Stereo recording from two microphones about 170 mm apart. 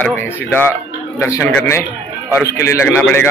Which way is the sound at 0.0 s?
10° left (ahead or behind).